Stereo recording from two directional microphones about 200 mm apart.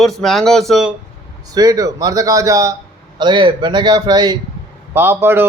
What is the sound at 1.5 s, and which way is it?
A man's voice, 20° right (ahead or behind).